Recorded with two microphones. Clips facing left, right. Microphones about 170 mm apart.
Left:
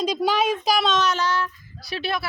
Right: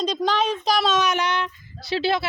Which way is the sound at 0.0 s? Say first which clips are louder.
Left 1 dB; 10° left (ahead or behind).